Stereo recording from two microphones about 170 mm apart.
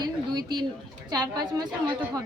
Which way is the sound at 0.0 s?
25° right (ahead or behind).